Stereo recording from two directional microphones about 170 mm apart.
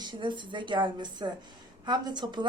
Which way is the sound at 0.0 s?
25° right (ahead or behind).